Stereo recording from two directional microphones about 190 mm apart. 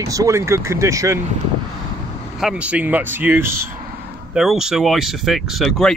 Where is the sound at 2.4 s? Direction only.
5° right (ahead or behind).